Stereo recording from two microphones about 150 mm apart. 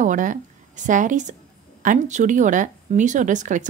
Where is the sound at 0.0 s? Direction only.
60° right (ahead or behind).